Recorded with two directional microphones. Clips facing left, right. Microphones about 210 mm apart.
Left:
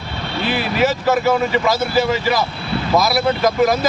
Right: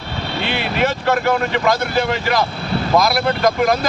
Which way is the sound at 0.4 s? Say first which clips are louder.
Left 3 dB; 35° left (ahead or behind).